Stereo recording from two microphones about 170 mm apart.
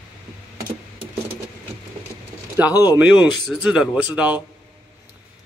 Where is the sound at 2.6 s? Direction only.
10° right (ahead or behind).